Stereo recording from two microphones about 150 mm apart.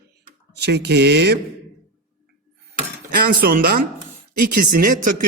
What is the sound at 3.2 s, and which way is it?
Speech, 85° right.